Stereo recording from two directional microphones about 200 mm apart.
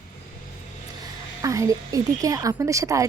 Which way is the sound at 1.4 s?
15° right (ahead or behind).